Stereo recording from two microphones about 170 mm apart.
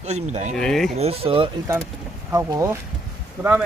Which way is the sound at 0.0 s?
40° right (ahead or behind).